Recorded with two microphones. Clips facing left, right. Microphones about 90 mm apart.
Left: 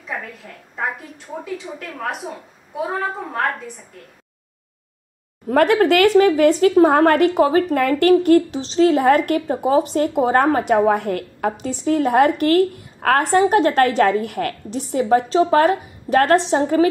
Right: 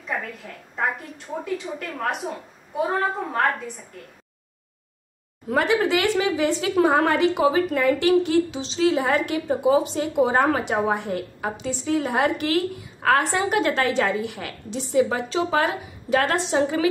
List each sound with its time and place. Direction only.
0.0 s a woman's voice: centre (ahead or behind)
5.5 s a woman's voice: 55° left (ahead or behind)